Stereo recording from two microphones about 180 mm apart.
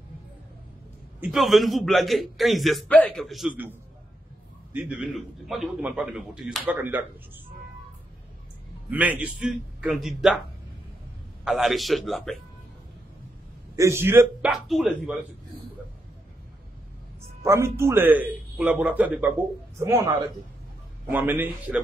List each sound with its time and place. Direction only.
1.2 s a man's voice: centre (ahead or behind)
4.7 s a man's voice: 5° right (ahead or behind)
8.9 s a man's voice: 10° right (ahead or behind)
11.4 s a man's voice: centre (ahead or behind)
13.7 s a man's voice: 15° right (ahead or behind)
17.4 s a man's voice: 15° right (ahead or behind)